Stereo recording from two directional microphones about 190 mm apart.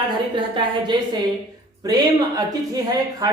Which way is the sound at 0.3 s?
25° right (ahead or behind).